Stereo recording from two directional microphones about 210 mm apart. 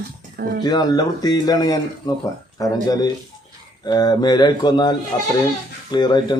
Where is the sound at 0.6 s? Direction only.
20° left (ahead or behind).